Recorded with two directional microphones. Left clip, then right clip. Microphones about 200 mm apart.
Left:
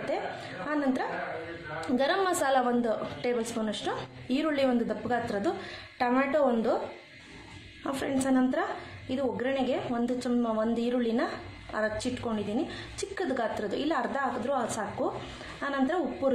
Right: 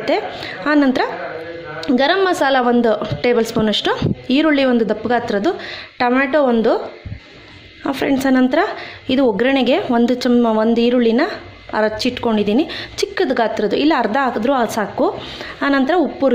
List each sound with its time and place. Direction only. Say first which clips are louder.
0.7 s a woman's voice: right 16 dB; 40° right (ahead or behind)
1.8 s a woman's voice: right 12 dB; 30° right (ahead or behind)
7.8 s a woman's voice: right 13 dB; 35° right (ahead or behind)